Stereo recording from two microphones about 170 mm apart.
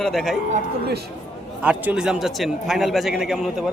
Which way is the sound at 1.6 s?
10° right (ahead or behind).